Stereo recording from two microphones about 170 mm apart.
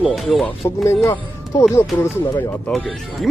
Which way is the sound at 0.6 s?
15° left (ahead or behind).